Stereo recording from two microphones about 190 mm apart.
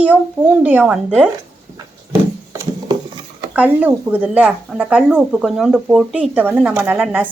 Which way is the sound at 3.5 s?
10° right (ahead or behind).